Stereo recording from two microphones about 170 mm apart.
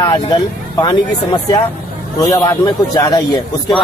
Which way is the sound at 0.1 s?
25° left (ahead or behind).